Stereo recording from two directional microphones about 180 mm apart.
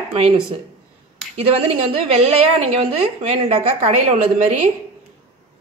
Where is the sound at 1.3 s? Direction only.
35° right (ahead or behind).